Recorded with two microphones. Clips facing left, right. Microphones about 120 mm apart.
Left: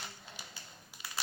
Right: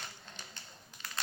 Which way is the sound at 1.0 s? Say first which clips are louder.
Right 1 dB; 15° left (ahead or behind).